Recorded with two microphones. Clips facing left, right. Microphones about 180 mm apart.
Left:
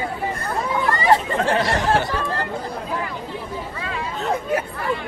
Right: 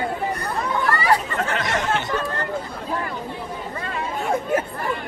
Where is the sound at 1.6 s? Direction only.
20° right (ahead or behind).